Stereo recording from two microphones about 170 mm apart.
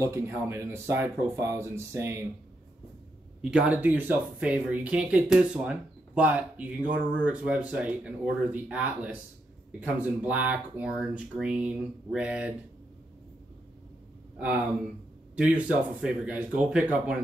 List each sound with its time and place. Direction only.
0.0 s speech: 15° right (ahead or behind)
3.4 s speech: 5° right (ahead or behind)
15.3 s speech: 5° right (ahead or behind)